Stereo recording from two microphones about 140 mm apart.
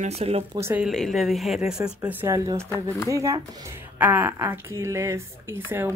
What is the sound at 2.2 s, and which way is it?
Speech, 20° right (ahead or behind).